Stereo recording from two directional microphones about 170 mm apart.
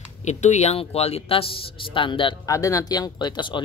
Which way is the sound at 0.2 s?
45° left (ahead or behind).